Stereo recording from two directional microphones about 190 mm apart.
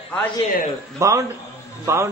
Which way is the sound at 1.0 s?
15° right (ahead or behind).